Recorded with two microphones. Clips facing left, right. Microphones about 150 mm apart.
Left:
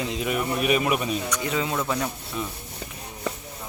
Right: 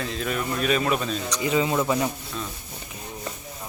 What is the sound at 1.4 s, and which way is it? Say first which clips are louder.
Speech: right 4 dB; 5° right (ahead or behind).